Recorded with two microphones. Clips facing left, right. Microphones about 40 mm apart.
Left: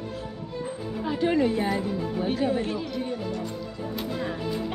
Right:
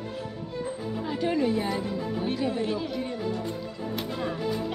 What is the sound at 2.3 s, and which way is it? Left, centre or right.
Speech, left.